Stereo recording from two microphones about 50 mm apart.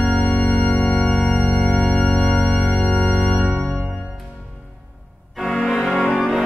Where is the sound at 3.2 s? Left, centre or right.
Centre.